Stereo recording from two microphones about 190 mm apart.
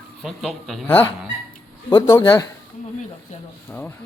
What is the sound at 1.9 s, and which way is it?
Speech, 20° left (ahead or behind).